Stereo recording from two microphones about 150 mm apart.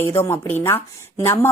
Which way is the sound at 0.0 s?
15° left (ahead or behind).